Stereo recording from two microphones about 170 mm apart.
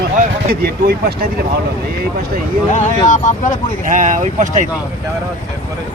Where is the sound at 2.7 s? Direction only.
45° left (ahead or behind).